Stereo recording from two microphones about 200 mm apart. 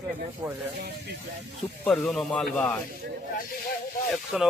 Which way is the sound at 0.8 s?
55° right (ahead or behind).